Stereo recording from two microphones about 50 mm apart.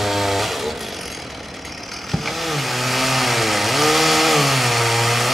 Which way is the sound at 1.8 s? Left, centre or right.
Centre.